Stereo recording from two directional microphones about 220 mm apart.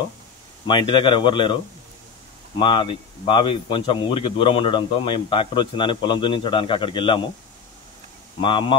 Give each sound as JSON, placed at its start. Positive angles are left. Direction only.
{"t": 0.7, "sound": "speech", "side_deg": 20}
{"t": 2.6, "sound": "speech", "side_deg": 25}
{"t": 8.4, "sound": "speech", "side_deg": 20}